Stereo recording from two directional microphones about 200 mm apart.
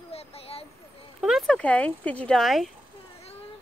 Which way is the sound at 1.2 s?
Centre (ahead or behind).